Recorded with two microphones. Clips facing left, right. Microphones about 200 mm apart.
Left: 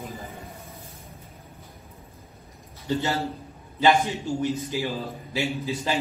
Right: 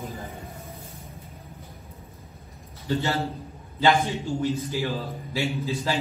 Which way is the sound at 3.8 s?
15° left (ahead or behind).